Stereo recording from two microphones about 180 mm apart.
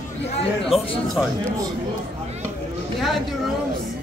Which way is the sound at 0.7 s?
Centre (ahead or behind).